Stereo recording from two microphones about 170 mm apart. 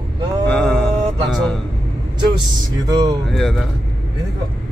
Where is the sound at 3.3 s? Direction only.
Centre (ahead or behind).